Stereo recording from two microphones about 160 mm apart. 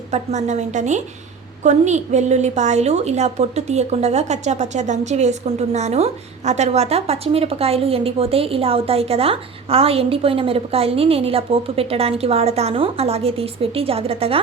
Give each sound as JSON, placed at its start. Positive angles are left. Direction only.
{"t": 0.1, "sound": "a woman's voice", "side_deg": -45}